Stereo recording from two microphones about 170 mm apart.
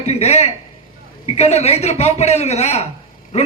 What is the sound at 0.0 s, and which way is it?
A man's voice, 40° left (ahead or behind).